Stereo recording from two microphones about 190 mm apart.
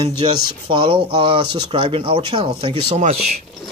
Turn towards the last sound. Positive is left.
turn(degrees=-35)  # may be behind; listen again after turning